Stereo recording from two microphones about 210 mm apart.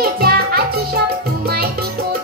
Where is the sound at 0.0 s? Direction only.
45° right (ahead or behind).